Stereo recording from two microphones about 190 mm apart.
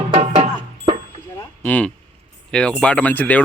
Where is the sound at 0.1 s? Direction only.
35° right (ahead or behind).